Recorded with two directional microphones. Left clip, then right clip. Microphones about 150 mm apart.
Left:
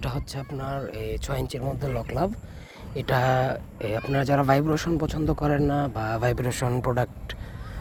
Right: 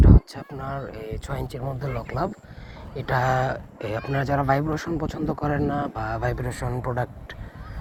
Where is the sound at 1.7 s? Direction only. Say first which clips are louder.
Even; 35° left (ahead or behind).